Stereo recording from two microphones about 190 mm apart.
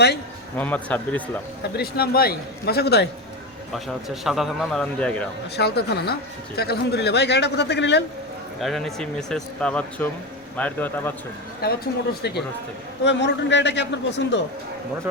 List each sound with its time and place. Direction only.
0.5 s speech: 10° left (ahead or behind)
1.7 s speech: 55° left (ahead or behind)
4.1 s speech: centre (ahead or behind)
5.5 s speech: 60° left (ahead or behind)
8.6 s speech: centre (ahead or behind)
11.6 s a man's voice: 55° left (ahead or behind)